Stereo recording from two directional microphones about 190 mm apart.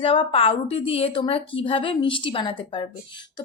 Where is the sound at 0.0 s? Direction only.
30° left (ahead or behind).